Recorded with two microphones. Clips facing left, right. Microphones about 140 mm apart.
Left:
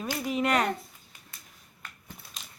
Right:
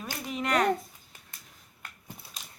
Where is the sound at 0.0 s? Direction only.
5° left (ahead or behind).